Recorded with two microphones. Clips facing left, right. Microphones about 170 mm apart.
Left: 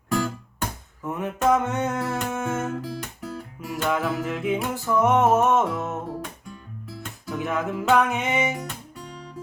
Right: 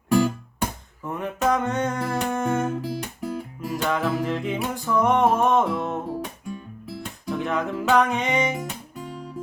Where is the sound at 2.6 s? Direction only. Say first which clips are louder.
Right 3 dB; 20° right (ahead or behind).